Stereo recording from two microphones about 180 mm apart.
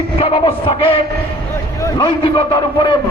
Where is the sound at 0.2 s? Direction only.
30° left (ahead or behind).